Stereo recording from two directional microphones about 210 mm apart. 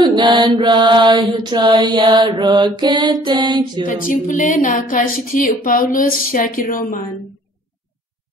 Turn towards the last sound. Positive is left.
turn(degrees=40)  # may be behind; listen again after turning